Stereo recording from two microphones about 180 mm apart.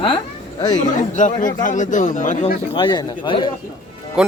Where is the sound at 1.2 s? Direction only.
45° left (ahead or behind).